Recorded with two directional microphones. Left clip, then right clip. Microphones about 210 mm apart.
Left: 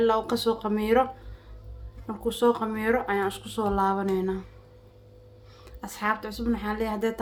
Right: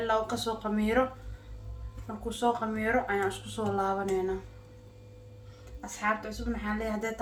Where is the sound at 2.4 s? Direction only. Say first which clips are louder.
Left 4 dB; 55° left (ahead or behind).